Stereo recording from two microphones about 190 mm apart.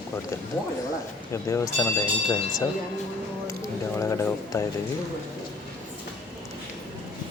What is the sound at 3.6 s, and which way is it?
Speech, 15° left (ahead or behind).